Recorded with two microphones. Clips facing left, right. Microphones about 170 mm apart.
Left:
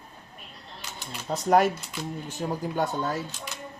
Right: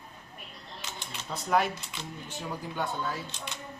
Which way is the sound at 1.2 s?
45° left (ahead or behind).